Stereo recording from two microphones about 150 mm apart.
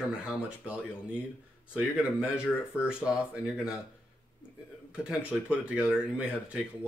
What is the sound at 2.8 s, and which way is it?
Speech, 5° right (ahead or behind).